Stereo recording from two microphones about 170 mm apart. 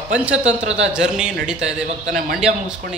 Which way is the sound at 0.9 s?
5° right (ahead or behind).